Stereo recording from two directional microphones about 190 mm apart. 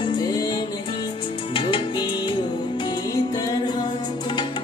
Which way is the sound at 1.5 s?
25° left (ahead or behind).